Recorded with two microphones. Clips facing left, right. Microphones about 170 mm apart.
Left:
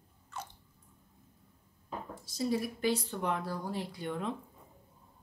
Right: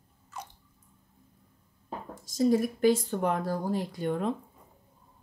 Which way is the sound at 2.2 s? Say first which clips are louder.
Right 8 dB; 45° right (ahead or behind).